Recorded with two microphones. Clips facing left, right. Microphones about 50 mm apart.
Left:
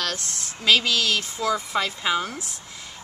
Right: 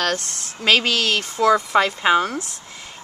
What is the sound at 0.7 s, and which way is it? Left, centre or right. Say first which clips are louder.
Speech: right 3 dB; right.